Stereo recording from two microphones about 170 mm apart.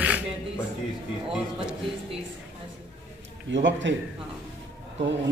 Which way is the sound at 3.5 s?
90° right.